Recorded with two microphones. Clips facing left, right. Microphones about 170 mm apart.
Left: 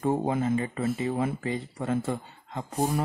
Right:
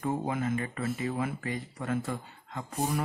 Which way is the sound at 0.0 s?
30° left (ahead or behind).